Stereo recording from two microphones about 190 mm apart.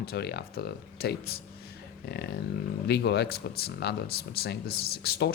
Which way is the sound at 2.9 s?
60° left (ahead or behind).